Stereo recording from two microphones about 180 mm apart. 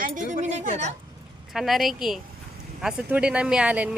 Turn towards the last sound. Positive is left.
turn(degrees=-5)  # may be behind; listen again after turning